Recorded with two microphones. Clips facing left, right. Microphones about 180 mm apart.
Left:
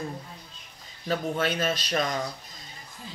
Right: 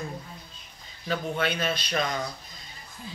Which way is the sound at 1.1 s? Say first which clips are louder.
Left 1 dB; 40° left (ahead or behind).